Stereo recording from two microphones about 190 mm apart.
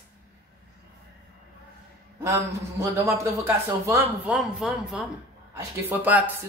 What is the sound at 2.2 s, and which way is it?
Speech, 15° right (ahead or behind).